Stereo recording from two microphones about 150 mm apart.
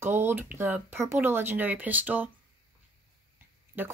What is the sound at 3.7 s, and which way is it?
Speech, 15° right (ahead or behind).